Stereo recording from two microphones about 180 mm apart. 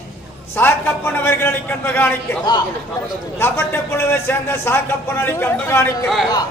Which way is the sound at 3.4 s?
15° left (ahead or behind).